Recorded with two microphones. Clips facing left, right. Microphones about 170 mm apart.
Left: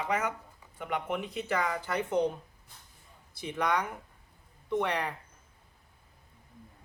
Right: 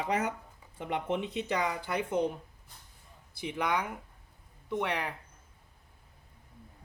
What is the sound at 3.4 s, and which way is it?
A man's voice, 10° right (ahead or behind).